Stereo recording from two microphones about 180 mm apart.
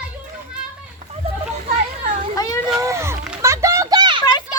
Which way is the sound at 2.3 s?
20° left (ahead or behind).